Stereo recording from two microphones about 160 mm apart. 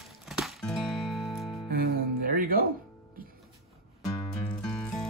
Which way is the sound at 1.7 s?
65° right (ahead or behind).